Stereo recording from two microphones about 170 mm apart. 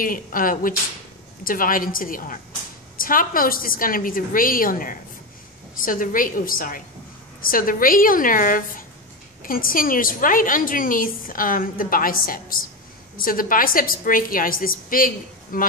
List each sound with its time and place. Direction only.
0.0 s a woman's voice: 55° left (ahead or behind)